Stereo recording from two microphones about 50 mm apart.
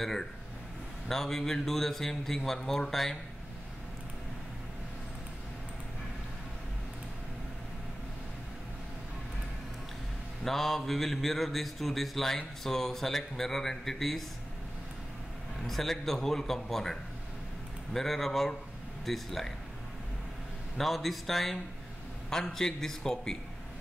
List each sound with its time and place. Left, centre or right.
0.0 s a man's voice: centre
10.4 s speech: centre
15.6 s speech: centre
20.7 s a man's voice: centre